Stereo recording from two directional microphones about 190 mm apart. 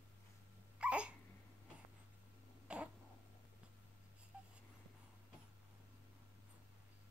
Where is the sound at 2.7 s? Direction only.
5° right (ahead or behind).